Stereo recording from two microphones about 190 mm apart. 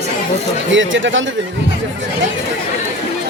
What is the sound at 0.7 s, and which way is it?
Speech, 80° right.